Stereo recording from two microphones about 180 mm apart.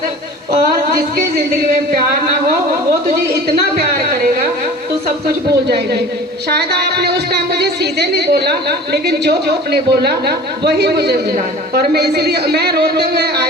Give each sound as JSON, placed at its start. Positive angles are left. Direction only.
{"t": 0.6, "sound": "speech", "side_deg": -55}
{"t": 5.6, "sound": "speech", "side_deg": -65}